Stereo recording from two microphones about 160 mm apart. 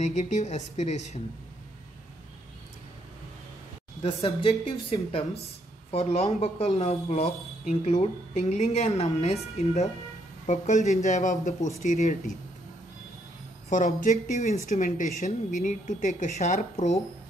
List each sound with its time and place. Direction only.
0.0 s speech: 45° left (ahead or behind)
4.0 s a woman's voice: 35° left (ahead or behind); by 12.4 s 50° left (ahead or behind)
13.7 s speech: 50° left (ahead or behind)